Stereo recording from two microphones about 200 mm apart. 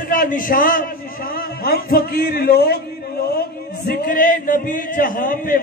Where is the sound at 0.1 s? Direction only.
45° left (ahead or behind).